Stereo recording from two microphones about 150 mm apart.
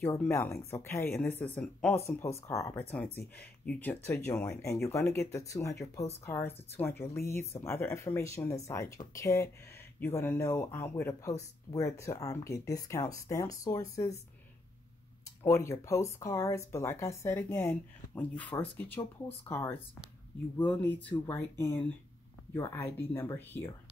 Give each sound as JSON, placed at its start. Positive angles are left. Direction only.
{"t": 0.0, "sound": "speech", "side_deg": 20}
{"t": 2.0, "sound": "speech", "side_deg": 20}
{"t": 15.4, "sound": "speech", "side_deg": 20}